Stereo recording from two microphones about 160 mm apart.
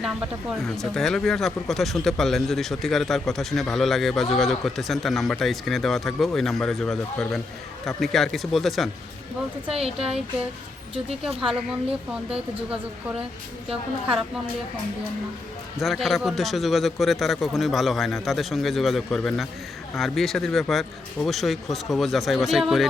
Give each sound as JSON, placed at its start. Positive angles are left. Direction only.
{"t": 0.6, "sound": "speech", "side_deg": 0}
{"t": 10.9, "sound": "speech", "side_deg": -40}
{"t": 11.3, "sound": "speech", "side_deg": -5}
{"t": 15.8, "sound": "speech", "side_deg": 0}